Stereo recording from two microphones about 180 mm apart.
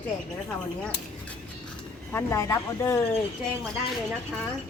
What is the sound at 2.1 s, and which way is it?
Speech, 15° left (ahead or behind).